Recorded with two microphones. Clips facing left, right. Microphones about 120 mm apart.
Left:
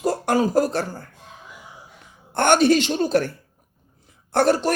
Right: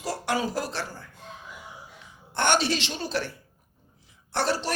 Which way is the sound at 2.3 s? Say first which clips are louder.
Left 8 dB; 50° left (ahead or behind).